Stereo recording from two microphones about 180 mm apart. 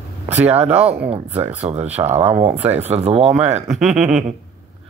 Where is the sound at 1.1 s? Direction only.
35° right (ahead or behind).